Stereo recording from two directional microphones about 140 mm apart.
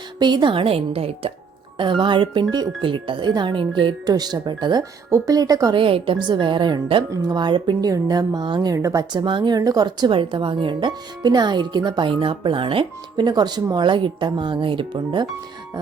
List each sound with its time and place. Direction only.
0.2 s speech: 30° right (ahead or behind)
5.7 s a woman's voice: 40° right (ahead or behind); by 9.0 s 25° right (ahead or behind)
9.1 s speech: 35° right (ahead or behind)